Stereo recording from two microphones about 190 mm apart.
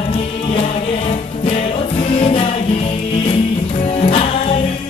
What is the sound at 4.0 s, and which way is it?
Music, 30° left (ahead or behind).